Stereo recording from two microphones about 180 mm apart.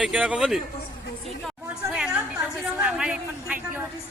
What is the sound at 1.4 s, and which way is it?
Chatter, 5° right (ahead or behind).